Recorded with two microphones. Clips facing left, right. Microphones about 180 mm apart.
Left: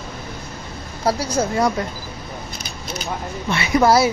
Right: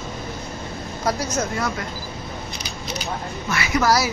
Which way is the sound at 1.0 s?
30° left (ahead or behind).